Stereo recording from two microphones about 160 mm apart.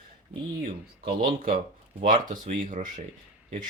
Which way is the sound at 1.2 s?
60° right (ahead or behind).